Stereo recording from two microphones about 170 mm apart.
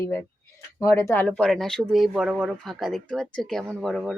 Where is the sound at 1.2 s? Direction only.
5° left (ahead or behind).